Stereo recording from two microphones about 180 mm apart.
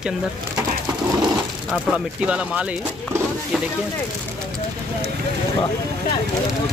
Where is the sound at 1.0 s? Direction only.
20° right (ahead or behind).